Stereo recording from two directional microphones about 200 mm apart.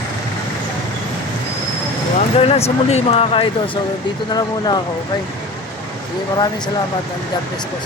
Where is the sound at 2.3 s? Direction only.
30° left (ahead or behind).